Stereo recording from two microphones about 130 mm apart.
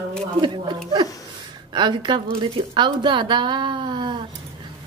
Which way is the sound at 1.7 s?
40° right (ahead or behind).